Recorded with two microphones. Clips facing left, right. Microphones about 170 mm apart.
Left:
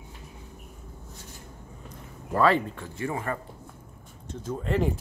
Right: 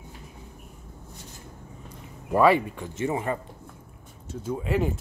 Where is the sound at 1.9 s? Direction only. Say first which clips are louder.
Right 4 dB; 15° right (ahead or behind).